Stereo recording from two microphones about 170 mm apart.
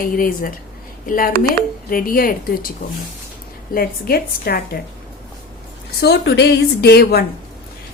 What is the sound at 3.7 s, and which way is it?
Speech, 60° left (ahead or behind).